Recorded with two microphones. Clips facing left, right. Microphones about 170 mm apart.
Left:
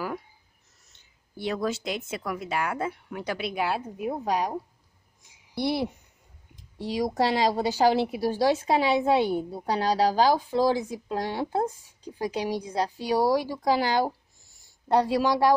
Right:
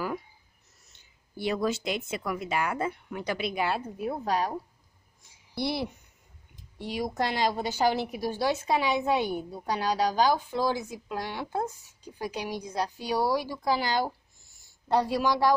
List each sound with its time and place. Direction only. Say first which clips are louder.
1.4 s speech: even; 5° right (ahead or behind)
3.8 s a woman's voice: left 2 dB; 15° left (ahead or behind)
6.8 s a woman's voice: left 5 dB; 35° left (ahead or behind)